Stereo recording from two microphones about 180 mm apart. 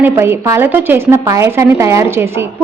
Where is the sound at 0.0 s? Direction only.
15° right (ahead or behind).